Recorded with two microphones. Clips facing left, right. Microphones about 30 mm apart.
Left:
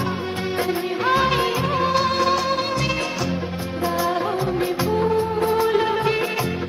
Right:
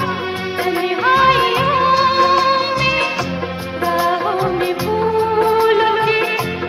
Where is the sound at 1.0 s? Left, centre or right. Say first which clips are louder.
Right 7 dB; right.